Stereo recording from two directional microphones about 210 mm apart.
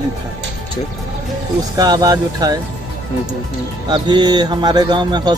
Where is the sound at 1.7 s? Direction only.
20° right (ahead or behind).